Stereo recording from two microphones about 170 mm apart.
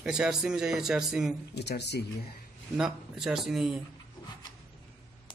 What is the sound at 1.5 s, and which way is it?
Speech, 75° left (ahead or behind).